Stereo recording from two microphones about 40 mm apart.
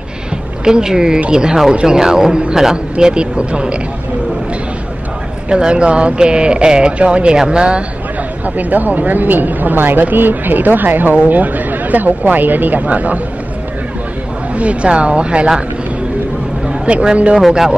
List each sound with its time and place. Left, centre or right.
0.7 s speech: centre
5.5 s speech: right
8.5 s speech: right
14.5 s speech: right
16.6 s a man's voice: right
17.4 s speech: centre